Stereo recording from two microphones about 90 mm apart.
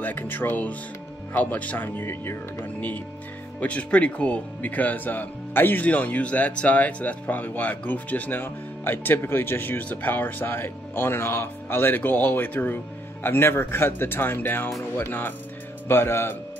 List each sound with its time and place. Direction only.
0.0 s speech: 20° left (ahead or behind)